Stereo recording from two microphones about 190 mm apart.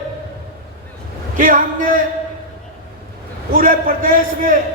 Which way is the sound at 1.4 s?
45° right (ahead or behind).